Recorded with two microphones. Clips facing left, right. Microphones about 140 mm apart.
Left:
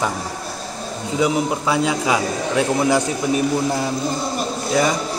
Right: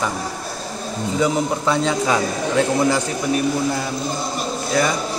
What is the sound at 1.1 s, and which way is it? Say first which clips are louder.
A man's voice: left 1 dB; 10° left (ahead or behind).